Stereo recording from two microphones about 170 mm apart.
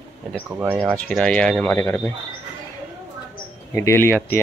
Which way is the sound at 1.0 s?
5° left (ahead or behind).